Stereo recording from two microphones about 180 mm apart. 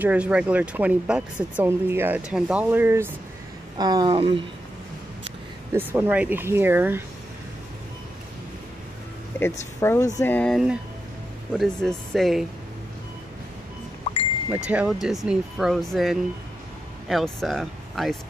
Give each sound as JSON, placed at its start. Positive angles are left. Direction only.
{"t": 0.0, "sound": "speech", "side_deg": -5}
{"t": 3.7, "sound": "speech", "side_deg": -20}
{"t": 5.8, "sound": "speech", "side_deg": -10}
{"t": 9.4, "sound": "speech", "side_deg": 15}
{"t": 14.5, "sound": "speech", "side_deg": -10}